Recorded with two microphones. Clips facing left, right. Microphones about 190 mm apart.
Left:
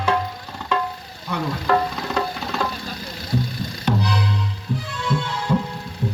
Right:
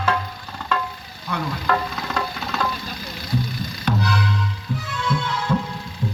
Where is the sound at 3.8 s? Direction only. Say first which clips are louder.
Left 1 dB; 25° left (ahead or behind).